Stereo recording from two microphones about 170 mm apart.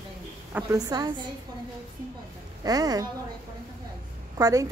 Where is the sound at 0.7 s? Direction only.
20° right (ahead or behind).